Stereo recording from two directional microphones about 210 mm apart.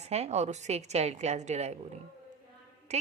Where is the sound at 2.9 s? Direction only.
30° right (ahead or behind).